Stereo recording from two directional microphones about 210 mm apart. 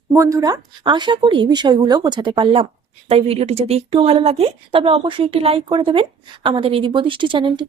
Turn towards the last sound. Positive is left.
turn(degrees=-25)  # may be behind; listen again after turning